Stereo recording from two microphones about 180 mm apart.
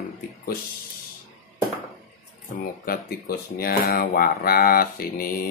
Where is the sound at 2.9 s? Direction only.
55° left (ahead or behind).